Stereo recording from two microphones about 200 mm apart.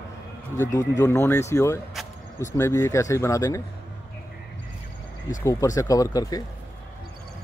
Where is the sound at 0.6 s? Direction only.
15° left (ahead or behind).